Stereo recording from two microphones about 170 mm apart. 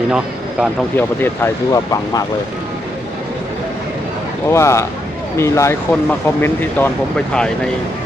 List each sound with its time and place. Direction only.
0.9 s speech: 15° left (ahead or behind)
4.4 s speech: 15° left (ahead or behind)